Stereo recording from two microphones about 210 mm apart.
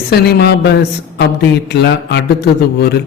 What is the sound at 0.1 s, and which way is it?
A man's voice, 50° left (ahead or behind).